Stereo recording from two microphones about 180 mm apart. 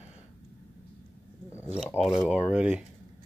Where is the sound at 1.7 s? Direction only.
Centre (ahead or behind).